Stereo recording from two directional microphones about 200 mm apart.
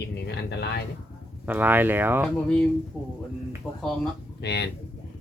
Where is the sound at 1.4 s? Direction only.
10° right (ahead or behind).